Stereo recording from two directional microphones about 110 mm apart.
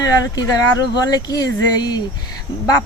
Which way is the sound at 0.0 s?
35° left (ahead or behind).